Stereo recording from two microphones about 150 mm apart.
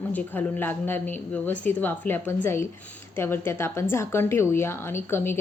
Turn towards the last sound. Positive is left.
turn(degrees=15)  # may be behind; listen again after turning